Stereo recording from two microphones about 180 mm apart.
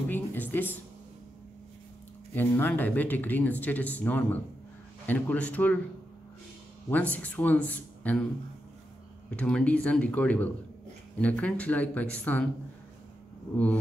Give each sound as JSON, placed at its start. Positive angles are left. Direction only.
{"t": 0.1, "sound": "music", "side_deg": 10}
{"t": 2.3, "sound": "speech", "side_deg": 10}
{"t": 6.9, "sound": "speech", "side_deg": 10}
{"t": 9.3, "sound": "speech", "side_deg": 5}